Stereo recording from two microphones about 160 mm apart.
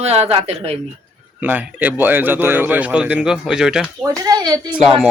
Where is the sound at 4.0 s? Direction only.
25° right (ahead or behind).